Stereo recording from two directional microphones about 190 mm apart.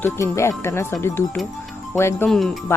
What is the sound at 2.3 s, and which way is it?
Speech, 5° left (ahead or behind).